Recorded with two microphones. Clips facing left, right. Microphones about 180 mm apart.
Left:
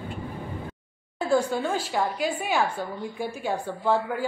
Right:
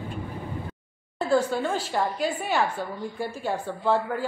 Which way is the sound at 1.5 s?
5° left (ahead or behind).